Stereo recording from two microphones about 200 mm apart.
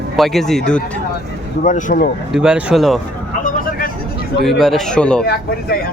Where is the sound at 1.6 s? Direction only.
40° left (ahead or behind).